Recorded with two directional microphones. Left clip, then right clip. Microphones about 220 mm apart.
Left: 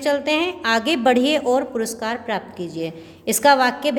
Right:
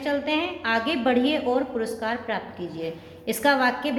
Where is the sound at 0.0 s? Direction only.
50° left (ahead or behind).